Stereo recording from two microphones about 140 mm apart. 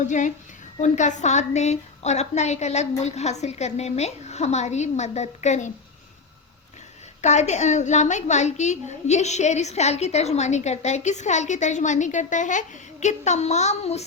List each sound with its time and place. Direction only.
0.1 s a woman's voice: 60° left (ahead or behind)
7.2 s a woman's voice: 55° left (ahead or behind)